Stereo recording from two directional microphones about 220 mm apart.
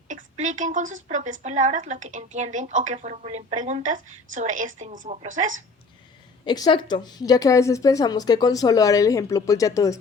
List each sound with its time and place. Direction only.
0.1 s a woman's voice: 35° right (ahead or behind)
6.4 s a woman's voice: 20° left (ahead or behind)